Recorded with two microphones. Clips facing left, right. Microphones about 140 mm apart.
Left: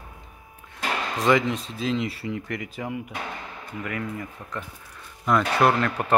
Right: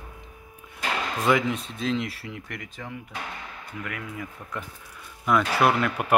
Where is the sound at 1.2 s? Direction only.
Centre (ahead or behind).